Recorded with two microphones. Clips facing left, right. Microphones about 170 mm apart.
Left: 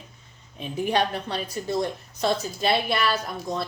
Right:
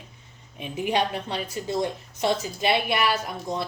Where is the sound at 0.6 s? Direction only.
15° right (ahead or behind).